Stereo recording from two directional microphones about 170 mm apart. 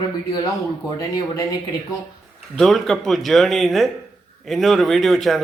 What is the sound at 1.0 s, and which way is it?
Speech, 20° left (ahead or behind).